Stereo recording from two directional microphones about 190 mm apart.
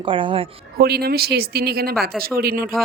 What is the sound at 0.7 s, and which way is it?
A woman's voice, 55° right (ahead or behind).